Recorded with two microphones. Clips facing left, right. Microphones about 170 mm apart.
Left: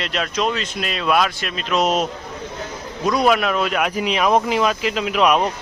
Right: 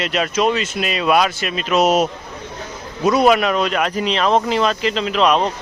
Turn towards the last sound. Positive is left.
turn(degrees=10)  # may be behind; listen again after turning